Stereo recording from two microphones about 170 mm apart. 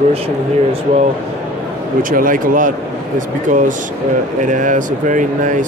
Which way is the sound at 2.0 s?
55° right (ahead or behind).